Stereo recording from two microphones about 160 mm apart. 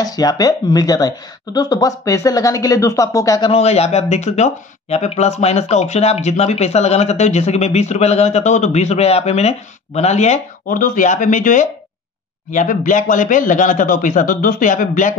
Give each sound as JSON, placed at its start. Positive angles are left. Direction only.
{"t": 0.0, "sound": "a woman's voice", "side_deg": 25}
{"t": 3.5, "sound": "speech", "side_deg": 40}